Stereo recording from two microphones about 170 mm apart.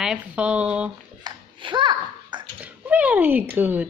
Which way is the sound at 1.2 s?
30° right (ahead or behind).